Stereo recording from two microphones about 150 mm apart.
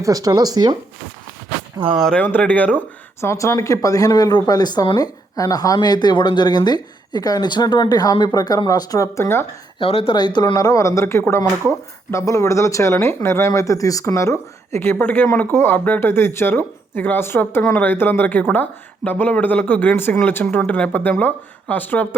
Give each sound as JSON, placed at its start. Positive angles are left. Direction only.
{"t": 0.0, "sound": "speech", "side_deg": -25}
{"t": 2.0, "sound": "speech", "side_deg": 5}
{"t": 9.7, "sound": "speech", "side_deg": 40}